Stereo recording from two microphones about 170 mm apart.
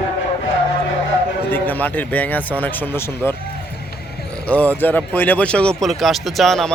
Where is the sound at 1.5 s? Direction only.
10° left (ahead or behind).